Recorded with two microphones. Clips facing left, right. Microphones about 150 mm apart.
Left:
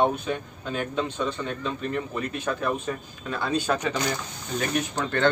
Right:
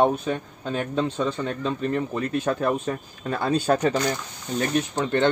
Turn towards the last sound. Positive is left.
turn(degrees=-20)  # may be behind; listen again after turning